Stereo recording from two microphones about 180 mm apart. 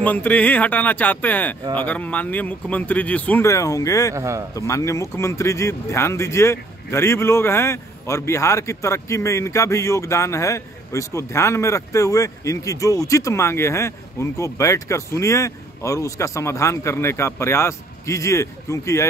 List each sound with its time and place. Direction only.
0.0 s speech: 10° left (ahead or behind)
4.1 s a man's voice: 15° right (ahead or behind)
4.6 s speech: 15° left (ahead or behind)